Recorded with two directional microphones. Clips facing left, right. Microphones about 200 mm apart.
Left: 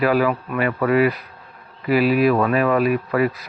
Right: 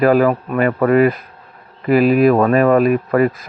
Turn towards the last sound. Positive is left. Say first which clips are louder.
# right 5 dB
turn(degrees=-50)  # may be behind; listen again after turning